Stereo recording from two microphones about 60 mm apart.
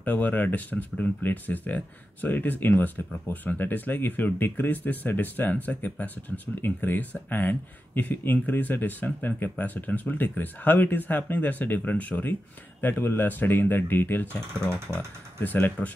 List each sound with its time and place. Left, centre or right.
0.0 s speech: left
14.6 s speech: centre
15.4 s speech: left